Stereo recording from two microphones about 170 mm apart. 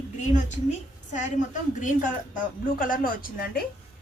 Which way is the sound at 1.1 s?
45° left (ahead or behind).